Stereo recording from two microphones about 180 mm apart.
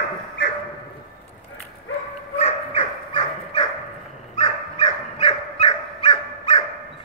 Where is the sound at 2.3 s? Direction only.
35° left (ahead or behind).